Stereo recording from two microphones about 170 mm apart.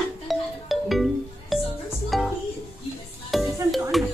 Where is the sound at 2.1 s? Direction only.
Centre (ahead or behind).